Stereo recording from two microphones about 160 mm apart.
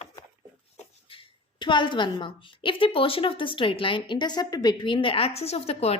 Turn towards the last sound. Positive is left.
turn(degrees=40)  # may be behind; listen again after turning